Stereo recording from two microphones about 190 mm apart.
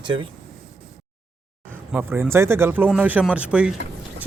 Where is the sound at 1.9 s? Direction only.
10° right (ahead or behind).